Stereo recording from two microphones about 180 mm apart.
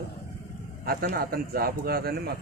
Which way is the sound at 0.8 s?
55° right (ahead or behind).